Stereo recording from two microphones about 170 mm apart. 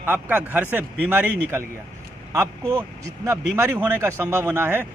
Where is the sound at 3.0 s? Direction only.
20° right (ahead or behind).